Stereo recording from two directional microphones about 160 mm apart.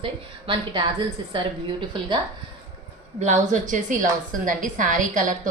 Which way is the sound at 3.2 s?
50° right (ahead or behind).